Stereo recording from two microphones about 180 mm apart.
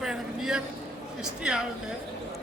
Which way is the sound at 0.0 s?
5° right (ahead or behind).